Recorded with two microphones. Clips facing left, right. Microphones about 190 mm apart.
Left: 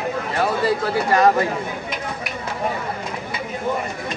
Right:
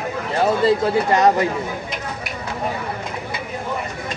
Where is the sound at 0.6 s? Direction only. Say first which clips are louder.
Right 3 dB; 20° right (ahead or behind).